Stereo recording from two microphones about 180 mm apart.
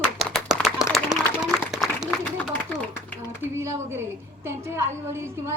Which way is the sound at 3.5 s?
15° right (ahead or behind).